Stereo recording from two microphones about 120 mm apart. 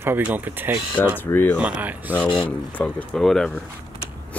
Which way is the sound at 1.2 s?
15° left (ahead or behind).